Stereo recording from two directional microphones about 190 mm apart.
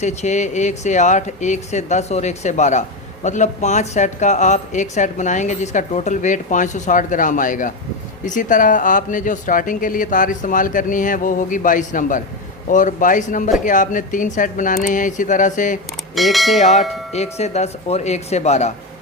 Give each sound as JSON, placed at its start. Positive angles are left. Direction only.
{"t": 0.0, "sound": "speech", "side_deg": 40}
{"t": 16.1, "sound": "bell", "side_deg": 0}
{"t": 16.6, "sound": "speech", "side_deg": 35}